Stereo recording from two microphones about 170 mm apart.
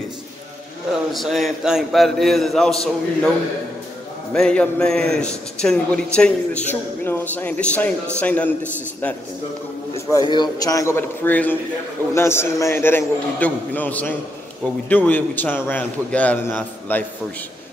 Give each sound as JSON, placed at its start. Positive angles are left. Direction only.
{"t": 1.1, "sound": "a man's voice", "side_deg": 0}
{"t": 4.3, "sound": "a man's voice", "side_deg": 5}
{"t": 10.3, "sound": "a man's voice", "side_deg": 25}